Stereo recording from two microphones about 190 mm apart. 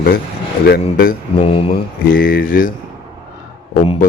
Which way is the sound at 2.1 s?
50° left (ahead or behind).